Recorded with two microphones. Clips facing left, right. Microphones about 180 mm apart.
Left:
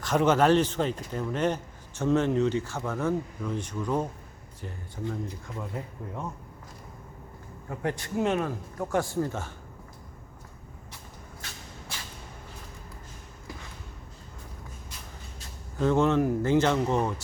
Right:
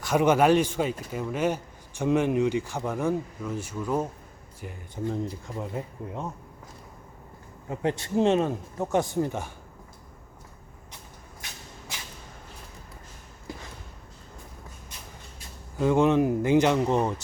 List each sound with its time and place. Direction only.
0.0 s speech: 10° right (ahead or behind)
5.1 s speech: 25° right (ahead or behind)
7.7 s speech: 20° right (ahead or behind)
15.8 s speech: 15° right (ahead or behind)